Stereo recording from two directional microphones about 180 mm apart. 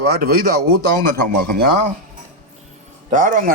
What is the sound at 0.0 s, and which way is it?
Speech, 55° right (ahead or behind).